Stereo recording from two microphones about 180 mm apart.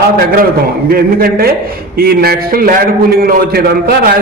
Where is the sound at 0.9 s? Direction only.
55° right (ahead or behind).